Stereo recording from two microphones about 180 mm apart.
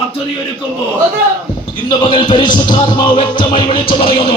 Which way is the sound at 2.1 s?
25° left (ahead or behind).